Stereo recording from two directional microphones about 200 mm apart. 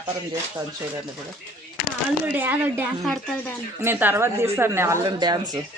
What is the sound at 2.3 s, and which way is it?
A woman's voice, 10° right (ahead or behind).